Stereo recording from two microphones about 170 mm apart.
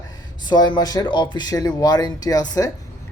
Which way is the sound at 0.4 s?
25° left (ahead or behind).